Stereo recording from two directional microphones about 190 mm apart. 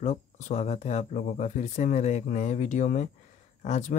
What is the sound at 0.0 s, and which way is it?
Speech, 40° left (ahead or behind).